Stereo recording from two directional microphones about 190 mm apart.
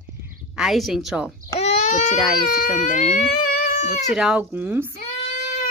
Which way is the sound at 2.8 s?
40° left (ahead or behind).